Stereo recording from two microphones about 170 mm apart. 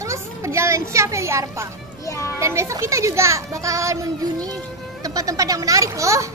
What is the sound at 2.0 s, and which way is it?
Speech, 15° left (ahead or behind).